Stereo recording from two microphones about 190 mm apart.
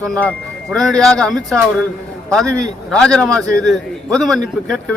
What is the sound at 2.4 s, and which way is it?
Speech, 15° right (ahead or behind).